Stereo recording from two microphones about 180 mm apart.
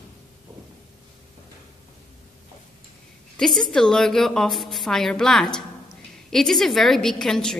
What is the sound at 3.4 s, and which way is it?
A woman's voice, 5° left (ahead or behind).